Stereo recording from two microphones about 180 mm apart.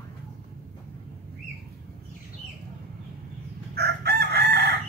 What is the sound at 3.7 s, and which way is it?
Chicken, 60° right (ahead or behind).